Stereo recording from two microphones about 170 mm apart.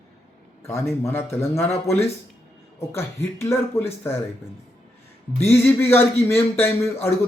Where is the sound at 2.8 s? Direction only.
15° left (ahead or behind).